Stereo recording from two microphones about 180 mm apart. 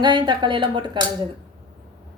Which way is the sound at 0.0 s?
25° right (ahead or behind).